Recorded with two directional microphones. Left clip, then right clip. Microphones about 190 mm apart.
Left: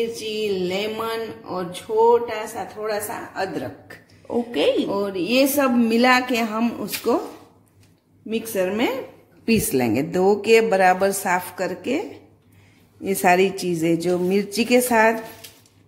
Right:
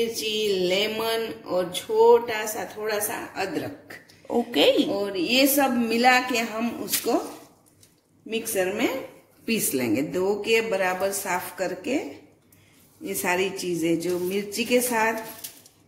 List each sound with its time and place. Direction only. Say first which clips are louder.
0.1 s speech: even; 20° left (ahead or behind)
3.3 s a woman's voice: left 4 dB; 35° left (ahead or behind)
4.5 s speech: right 1 dB; 5° right (ahead or behind)
4.9 s a woman's voice: left 3 dB; 45° left (ahead or behind)
8.5 s a woman's voice: left 3 dB; 50° left (ahead or behind)
13.0 s a woman's voice: left 8 dB; 50° left (ahead or behind)